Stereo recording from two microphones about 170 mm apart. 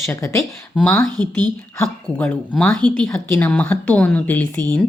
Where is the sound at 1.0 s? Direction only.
25° right (ahead or behind).